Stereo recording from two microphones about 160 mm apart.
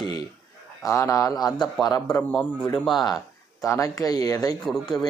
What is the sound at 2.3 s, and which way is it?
Speech, 5° left (ahead or behind).